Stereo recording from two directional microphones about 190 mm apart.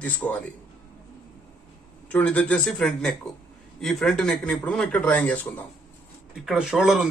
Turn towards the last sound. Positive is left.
turn(degrees=-5)  # may be behind; listen again after turning